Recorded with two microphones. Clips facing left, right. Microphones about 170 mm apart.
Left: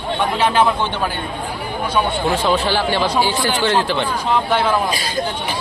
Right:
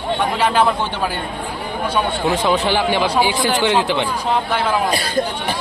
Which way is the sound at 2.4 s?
20° right (ahead or behind).